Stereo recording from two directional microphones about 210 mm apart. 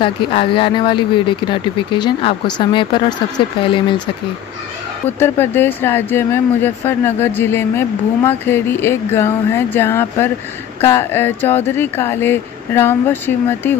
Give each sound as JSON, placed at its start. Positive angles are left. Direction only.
{"t": 0.0, "sound": "speech", "side_deg": 25}
{"t": 5.2, "sound": "speech", "side_deg": 10}